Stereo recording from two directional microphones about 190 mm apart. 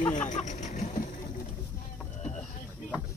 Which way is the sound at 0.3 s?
40° left (ahead or behind).